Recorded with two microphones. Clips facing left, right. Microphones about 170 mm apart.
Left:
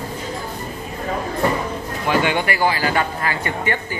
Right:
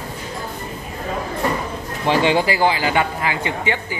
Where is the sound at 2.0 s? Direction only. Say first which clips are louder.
Right 3 dB; 25° right (ahead or behind).